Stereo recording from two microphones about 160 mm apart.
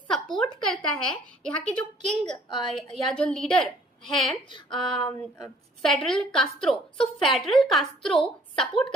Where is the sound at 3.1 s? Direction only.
5° left (ahead or behind).